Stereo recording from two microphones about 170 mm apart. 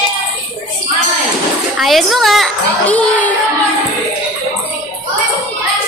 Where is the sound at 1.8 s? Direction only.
Centre (ahead or behind).